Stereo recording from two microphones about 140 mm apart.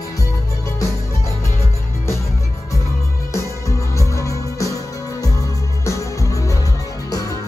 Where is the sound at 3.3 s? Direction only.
20° left (ahead or behind).